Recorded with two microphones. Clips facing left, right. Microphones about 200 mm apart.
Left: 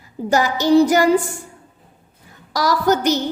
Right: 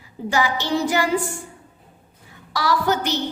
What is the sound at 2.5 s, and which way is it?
Speech, 40° left (ahead or behind).